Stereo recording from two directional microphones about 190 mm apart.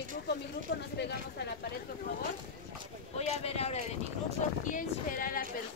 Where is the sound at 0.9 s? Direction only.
65° left (ahead or behind).